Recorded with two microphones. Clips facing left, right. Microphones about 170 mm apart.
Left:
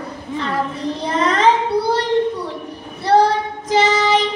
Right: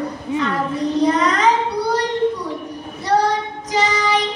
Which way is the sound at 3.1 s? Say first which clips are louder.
Left 3 dB; 30° left (ahead or behind).